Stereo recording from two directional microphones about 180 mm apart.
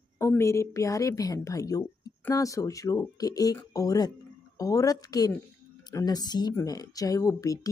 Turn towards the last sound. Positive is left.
turn(degrees=20)  # may be behind; listen again after turning